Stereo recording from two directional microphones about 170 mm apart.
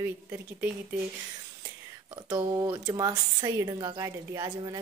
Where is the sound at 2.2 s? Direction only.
20° right (ahead or behind).